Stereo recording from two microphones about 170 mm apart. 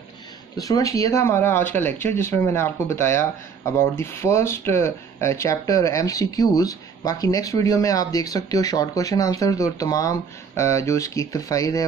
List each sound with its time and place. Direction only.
0.6 s speech: 20° left (ahead or behind)